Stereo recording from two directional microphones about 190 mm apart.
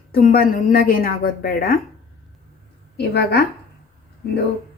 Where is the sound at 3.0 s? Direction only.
60° left (ahead or behind).